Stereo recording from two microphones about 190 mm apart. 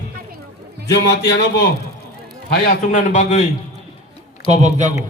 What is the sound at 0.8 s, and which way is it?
A man's voice, 60° left (ahead or behind).